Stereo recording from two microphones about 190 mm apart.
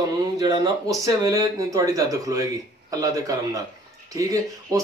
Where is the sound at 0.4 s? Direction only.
20° right (ahead or behind).